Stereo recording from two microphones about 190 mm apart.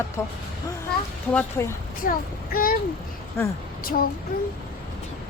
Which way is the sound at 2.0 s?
50° left (ahead or behind).